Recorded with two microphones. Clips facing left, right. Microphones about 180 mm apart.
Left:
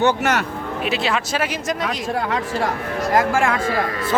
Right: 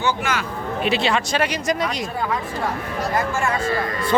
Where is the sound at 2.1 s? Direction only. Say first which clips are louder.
Left 3 dB; 75° left (ahead or behind).